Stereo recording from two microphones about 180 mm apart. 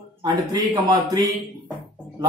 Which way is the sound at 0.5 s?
20° right (ahead or behind).